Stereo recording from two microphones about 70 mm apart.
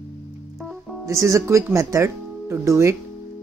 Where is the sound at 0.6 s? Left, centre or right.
Centre.